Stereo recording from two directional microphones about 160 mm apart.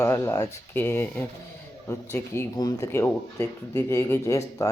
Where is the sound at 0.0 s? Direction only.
15° left (ahead or behind).